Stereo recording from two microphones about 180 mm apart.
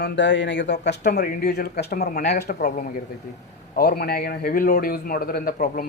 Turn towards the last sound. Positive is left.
turn(degrees=55)  # may be behind; listen again after turning